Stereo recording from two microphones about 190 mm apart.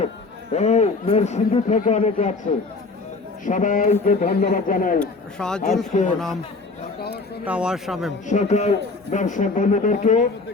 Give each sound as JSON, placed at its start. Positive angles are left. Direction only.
{"t": 0.5, "sound": "a man's voice", "side_deg": 35}
{"t": 4.9, "sound": "a man's voice", "side_deg": 5}
{"t": 5.9, "sound": "a man's voice", "side_deg": 40}
{"t": 7.4, "sound": "a man's voice", "side_deg": -5}
{"t": 8.3, "sound": "a man's voice", "side_deg": 40}